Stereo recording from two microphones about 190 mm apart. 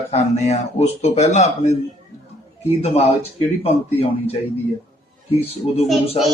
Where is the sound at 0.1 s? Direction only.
35° left (ahead or behind).